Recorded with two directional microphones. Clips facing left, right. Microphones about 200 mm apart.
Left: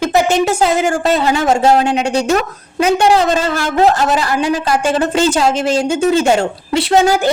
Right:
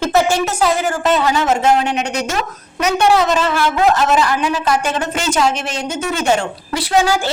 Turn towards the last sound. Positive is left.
turn(degrees=20)  # may be behind; listen again after turning